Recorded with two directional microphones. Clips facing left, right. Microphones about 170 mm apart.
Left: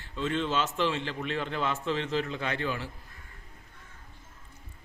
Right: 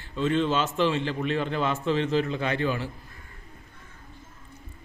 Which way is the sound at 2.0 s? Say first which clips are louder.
Right 6 dB; 15° right (ahead or behind).